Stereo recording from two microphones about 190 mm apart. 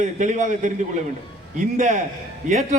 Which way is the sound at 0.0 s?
40° right (ahead or behind).